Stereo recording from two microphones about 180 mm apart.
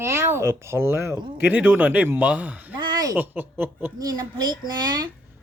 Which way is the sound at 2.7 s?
25° right (ahead or behind).